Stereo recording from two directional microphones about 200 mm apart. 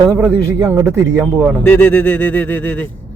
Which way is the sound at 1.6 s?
10° left (ahead or behind).